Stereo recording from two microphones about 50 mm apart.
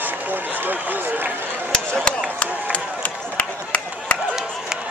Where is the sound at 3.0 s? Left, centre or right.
Left.